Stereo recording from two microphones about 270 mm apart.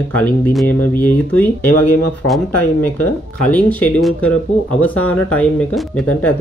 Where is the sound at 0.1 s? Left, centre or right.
Centre.